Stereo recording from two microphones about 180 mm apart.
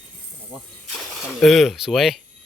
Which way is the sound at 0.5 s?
25° right (ahead or behind).